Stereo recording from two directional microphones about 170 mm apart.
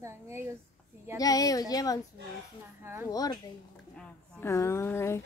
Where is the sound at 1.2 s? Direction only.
20° left (ahead or behind).